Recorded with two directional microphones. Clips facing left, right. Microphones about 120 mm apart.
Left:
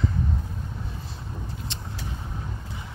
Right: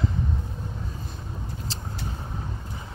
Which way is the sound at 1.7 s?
35° right (ahead or behind).